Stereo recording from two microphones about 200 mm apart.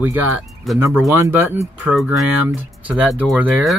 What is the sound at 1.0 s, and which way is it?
Speech, 15° right (ahead or behind).